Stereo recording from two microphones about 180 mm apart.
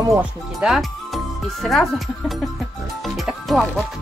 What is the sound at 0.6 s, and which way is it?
Speech, centre (ahead or behind).